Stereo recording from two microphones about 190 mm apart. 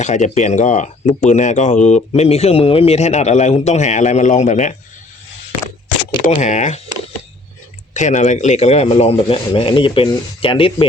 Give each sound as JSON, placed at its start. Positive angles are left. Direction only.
{"t": 0.0, "sound": "speech", "side_deg": 40}
{"t": 6.2, "sound": "speech", "side_deg": 40}
{"t": 7.9, "sound": "speech", "side_deg": 40}